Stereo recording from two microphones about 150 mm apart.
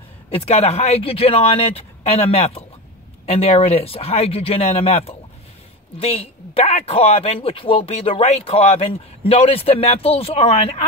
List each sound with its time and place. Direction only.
0.3 s speech: 40° left (ahead or behind)